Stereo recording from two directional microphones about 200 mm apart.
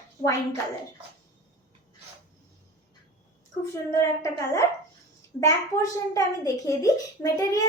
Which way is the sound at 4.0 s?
15° left (ahead or behind).